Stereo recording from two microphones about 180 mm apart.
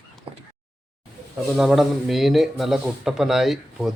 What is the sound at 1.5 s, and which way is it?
Speech, centre (ahead or behind).